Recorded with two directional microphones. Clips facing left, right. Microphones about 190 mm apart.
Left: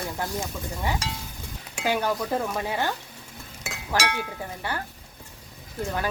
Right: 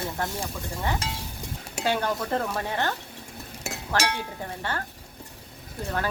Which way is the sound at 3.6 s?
40° right (ahead or behind).